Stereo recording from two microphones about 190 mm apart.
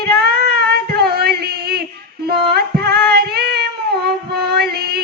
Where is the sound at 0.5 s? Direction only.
55° right (ahead or behind).